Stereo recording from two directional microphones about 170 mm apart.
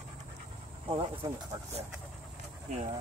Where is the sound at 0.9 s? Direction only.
30° right (ahead or behind).